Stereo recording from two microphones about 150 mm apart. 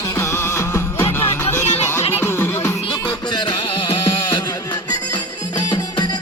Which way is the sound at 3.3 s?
30° left (ahead or behind).